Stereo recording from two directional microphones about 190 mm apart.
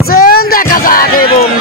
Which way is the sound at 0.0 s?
50° left (ahead or behind).